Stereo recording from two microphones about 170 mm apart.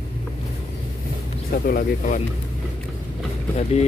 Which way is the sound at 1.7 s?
55° left (ahead or behind).